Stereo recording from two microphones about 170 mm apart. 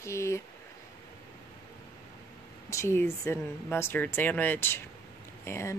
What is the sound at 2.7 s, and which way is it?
Speech, 15° left (ahead or behind).